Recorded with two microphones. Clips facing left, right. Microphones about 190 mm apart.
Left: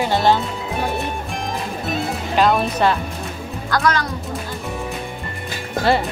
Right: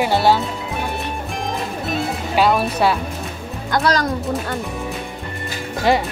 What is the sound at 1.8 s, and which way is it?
Music, 5° right (ahead or behind).